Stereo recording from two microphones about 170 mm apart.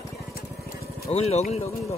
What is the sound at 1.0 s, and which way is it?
Speech, 40° left (ahead or behind).